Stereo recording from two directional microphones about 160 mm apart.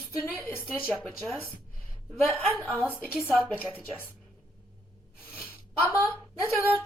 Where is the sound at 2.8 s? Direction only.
10° left (ahead or behind).